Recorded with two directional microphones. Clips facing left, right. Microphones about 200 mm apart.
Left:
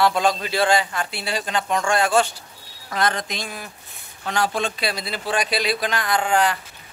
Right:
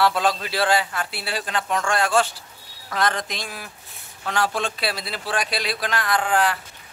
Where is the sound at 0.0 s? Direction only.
5° right (ahead or behind).